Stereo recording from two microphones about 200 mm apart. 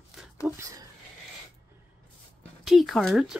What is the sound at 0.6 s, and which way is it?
Speech, 15° right (ahead or behind).